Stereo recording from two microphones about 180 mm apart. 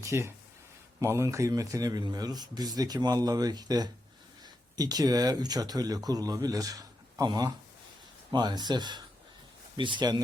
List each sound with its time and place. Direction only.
0.0 s speech: 15° right (ahead or behind)